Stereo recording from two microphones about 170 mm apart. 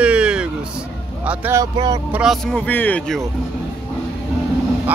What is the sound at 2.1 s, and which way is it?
Speech, centre (ahead or behind).